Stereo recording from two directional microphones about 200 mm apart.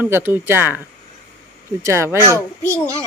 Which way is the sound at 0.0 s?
10° right (ahead or behind).